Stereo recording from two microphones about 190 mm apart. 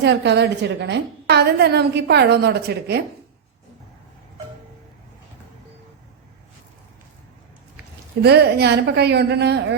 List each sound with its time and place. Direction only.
0.0 s a woman's voice: 65° right (ahead or behind)
8.2 s a woman's voice: 60° right (ahead or behind)